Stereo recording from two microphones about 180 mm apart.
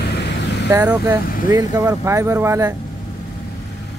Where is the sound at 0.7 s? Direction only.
10° right (ahead or behind).